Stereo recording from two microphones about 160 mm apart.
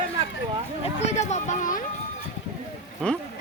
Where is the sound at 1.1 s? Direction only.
45° left (ahead or behind).